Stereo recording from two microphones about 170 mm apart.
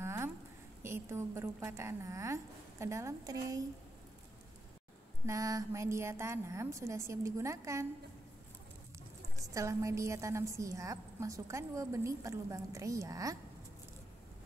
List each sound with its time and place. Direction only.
0.0 s a sound: 15° right (ahead or behind)
0.8 s a woman's voice: 15° right (ahead or behind)
5.2 s a woman's voice: 20° right (ahead or behind)
9.5 s a woman's voice: 20° right (ahead or behind)